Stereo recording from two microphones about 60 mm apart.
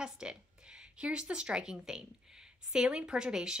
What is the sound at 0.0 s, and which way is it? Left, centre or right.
A woman's voice, centre.